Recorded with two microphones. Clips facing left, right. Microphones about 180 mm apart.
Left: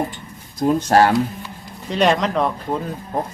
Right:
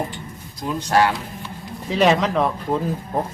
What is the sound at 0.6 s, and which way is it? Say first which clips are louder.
Speech: left 4 dB; 45° left (ahead or behind).